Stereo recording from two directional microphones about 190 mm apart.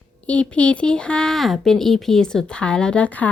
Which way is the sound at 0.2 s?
5° left (ahead or behind).